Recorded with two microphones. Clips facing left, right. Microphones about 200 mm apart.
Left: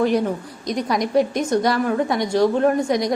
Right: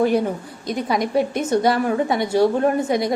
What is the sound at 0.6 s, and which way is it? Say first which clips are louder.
A woman's voice: right 1 dB; 5° right (ahead or behind).